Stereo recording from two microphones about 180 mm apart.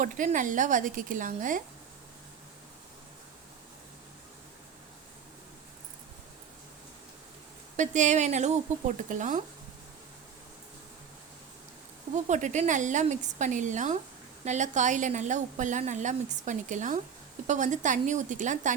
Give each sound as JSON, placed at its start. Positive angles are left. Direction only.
{"t": 0.0, "sound": "a woman's voice", "side_deg": -45}
{"t": 7.8, "sound": "a woman's voice", "side_deg": -40}
{"t": 12.1, "sound": "a woman's voice", "side_deg": -40}